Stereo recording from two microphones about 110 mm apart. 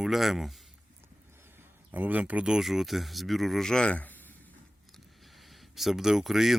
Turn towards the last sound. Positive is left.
turn(degrees=0)  # may be behind; listen again after turning